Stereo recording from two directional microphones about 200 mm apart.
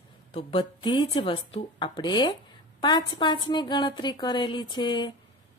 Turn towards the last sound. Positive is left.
turn(degrees=25)  # may be behind; listen again after turning